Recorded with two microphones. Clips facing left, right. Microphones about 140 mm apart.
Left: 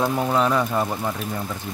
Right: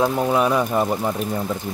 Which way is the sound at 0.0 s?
5° right (ahead or behind).